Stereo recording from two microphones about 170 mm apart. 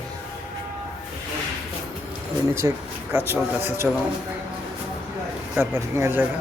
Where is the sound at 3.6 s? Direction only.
10° right (ahead or behind).